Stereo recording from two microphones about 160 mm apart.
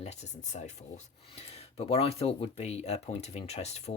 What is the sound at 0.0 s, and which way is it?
Speech, 45° left (ahead or behind).